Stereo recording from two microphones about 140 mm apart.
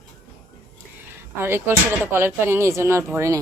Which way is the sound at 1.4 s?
15° right (ahead or behind).